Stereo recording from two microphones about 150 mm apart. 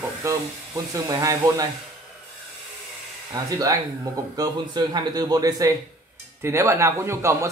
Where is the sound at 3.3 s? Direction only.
25° right (ahead or behind).